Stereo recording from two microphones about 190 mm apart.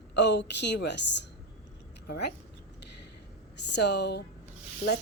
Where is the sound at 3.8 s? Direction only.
65° left (ahead or behind).